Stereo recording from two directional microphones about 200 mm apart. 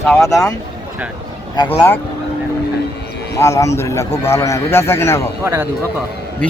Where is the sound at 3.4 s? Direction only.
15° left (ahead or behind).